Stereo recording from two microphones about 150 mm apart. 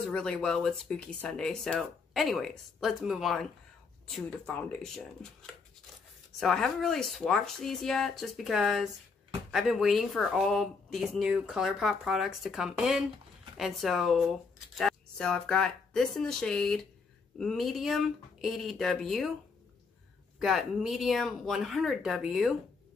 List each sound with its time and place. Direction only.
0.0 s speech: 5° left (ahead or behind)
20.3 s speech: centre (ahead or behind)